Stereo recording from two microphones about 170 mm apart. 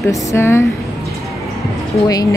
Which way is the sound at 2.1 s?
20° left (ahead or behind).